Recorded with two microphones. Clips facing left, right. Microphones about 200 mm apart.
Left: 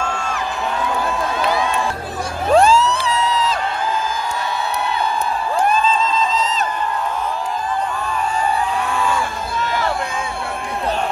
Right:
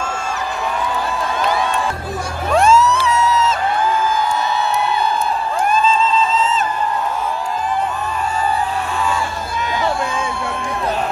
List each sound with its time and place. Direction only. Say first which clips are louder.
2.5 s music: even; 35° left (ahead or behind)